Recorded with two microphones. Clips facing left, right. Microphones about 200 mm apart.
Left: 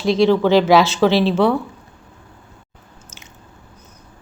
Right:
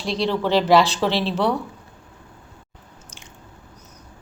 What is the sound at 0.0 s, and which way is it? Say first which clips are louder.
A woman's voice: left 8 dB; centre (ahead or behind).